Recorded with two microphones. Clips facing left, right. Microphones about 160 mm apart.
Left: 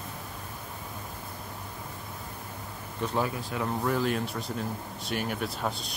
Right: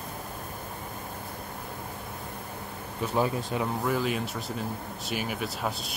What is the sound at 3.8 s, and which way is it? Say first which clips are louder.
Speech: even; centre (ahead or behind).